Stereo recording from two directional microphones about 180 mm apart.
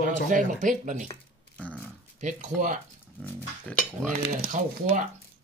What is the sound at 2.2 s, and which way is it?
Speech, 40° right (ahead or behind).